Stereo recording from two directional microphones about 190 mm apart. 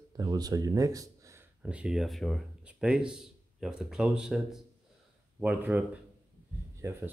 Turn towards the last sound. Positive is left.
turn(degrees=-15)  # may be behind; listen again after turning